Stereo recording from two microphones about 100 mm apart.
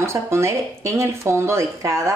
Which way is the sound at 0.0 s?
25° right (ahead or behind).